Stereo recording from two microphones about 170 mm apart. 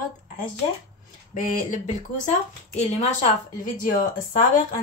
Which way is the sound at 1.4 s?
45° left (ahead or behind).